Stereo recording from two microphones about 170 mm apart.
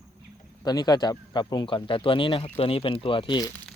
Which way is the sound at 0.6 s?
20° left (ahead or behind).